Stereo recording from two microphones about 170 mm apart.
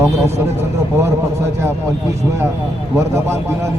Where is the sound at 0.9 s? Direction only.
15° right (ahead or behind).